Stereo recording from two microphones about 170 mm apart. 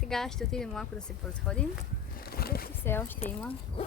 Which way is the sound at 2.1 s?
65° left (ahead or behind).